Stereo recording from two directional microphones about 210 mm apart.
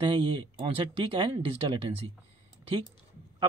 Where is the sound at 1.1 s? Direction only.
25° right (ahead or behind).